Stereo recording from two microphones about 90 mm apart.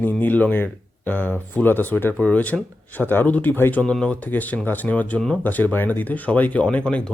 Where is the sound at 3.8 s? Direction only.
10° left (ahead or behind).